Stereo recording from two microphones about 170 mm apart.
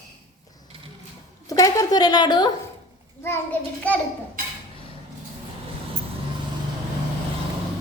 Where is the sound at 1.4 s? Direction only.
20° left (ahead or behind).